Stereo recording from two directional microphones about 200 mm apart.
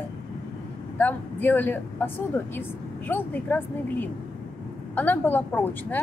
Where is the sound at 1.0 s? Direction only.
10° left (ahead or behind).